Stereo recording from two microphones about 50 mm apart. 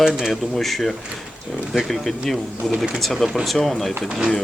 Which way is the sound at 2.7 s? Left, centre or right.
Centre.